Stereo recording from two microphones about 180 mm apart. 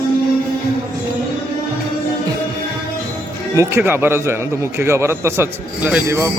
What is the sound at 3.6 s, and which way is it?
A man's voice, 15° right (ahead or behind).